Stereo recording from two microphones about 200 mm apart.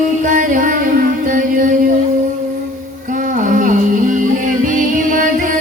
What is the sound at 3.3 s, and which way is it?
Music, 40° right (ahead or behind).